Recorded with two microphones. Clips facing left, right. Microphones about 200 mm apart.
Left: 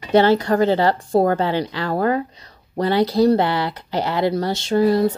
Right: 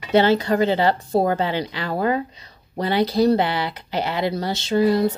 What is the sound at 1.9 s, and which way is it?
Speech, 50° left (ahead or behind).